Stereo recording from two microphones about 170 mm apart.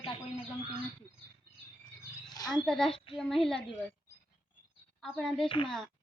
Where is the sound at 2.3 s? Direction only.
25° left (ahead or behind).